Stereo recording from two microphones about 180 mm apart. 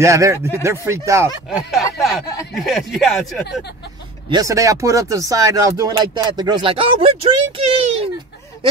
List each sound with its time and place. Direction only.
0.0 s speech: 15° right (ahead or behind)
1.5 s speech: centre (ahead or behind)
4.3 s speech: 20° right (ahead or behind); by 8.1 s 35° right (ahead or behind)